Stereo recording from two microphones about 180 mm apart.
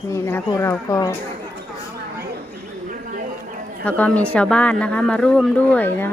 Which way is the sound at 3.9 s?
10° left (ahead or behind).